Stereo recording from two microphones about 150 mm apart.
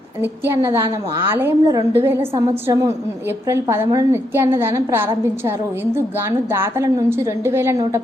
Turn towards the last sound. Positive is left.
turn(degrees=-20)  # may be behind; listen again after turning